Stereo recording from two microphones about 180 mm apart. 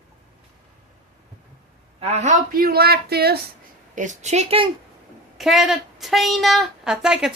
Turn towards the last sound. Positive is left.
turn(degrees=-5)  # may be behind; listen again after turning